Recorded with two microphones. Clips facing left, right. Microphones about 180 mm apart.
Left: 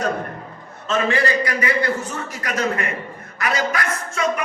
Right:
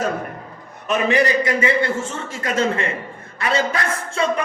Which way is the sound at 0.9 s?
20° right (ahead or behind).